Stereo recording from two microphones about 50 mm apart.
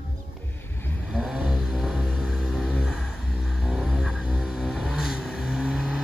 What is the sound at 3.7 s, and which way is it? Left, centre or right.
Vehicle, centre.